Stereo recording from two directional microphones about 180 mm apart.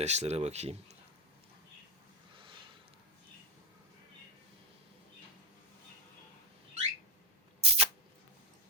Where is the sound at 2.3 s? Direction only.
30° right (ahead or behind).